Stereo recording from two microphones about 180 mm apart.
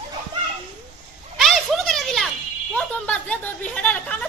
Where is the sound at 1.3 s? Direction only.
Centre (ahead or behind).